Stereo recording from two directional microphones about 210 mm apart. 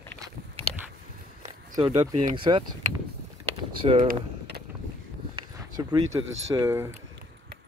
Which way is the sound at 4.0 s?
45° right (ahead or behind).